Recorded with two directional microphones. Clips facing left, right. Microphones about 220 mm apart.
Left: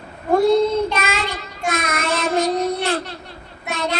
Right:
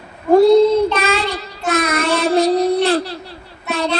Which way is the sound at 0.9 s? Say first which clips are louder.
Right 5 dB; 35° right (ahead or behind).